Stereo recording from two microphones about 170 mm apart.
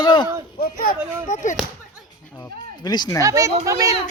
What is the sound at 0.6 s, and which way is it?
Speech, 60° left (ahead or behind).